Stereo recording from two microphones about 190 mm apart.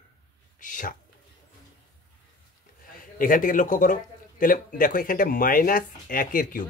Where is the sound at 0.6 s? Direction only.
45° left (ahead or behind).